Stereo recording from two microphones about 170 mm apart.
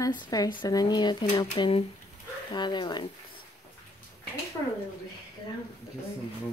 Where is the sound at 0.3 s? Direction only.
25° left (ahead or behind).